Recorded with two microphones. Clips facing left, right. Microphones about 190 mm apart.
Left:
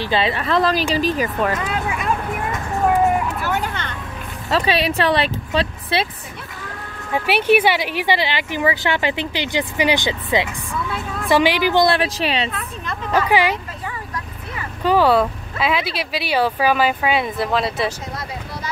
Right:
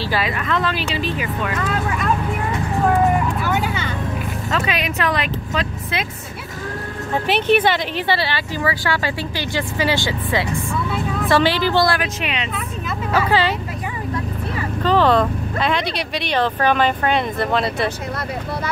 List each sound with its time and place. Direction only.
0.0 s speech: 25° left (ahead or behind); by 1.5 s 40° left (ahead or behind)
2.9 s vehicle: 5° left (ahead or behind)
4.5 s speech: 30° left (ahead or behind)
7.2 s speech: 10° left (ahead or behind); by 12.4 s 35° left (ahead or behind)
12.5 s vehicle: 5° right (ahead or behind)
13.3 s speech: 15° left (ahead or behind)
14.8 s speech: 10° left (ahead or behind)